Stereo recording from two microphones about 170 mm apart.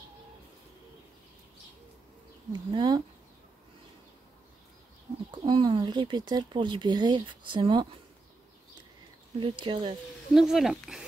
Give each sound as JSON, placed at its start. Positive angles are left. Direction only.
{"t": 2.5, "sound": "speech", "side_deg": -25}
{"t": 5.3, "sound": "speech", "side_deg": -25}
{"t": 9.4, "sound": "speech", "side_deg": -30}
{"t": 10.3, "sound": "speech", "side_deg": 0}